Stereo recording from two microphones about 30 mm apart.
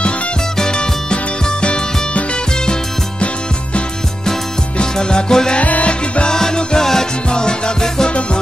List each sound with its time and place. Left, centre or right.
0.6 s music: left
4.9 s music: left
5.6 s music: left
6.2 s music: left